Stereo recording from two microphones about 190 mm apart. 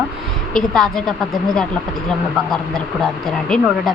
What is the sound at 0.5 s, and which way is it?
Speech, centre (ahead or behind).